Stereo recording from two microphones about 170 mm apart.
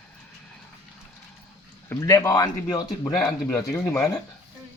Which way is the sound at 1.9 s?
15° left (ahead or behind).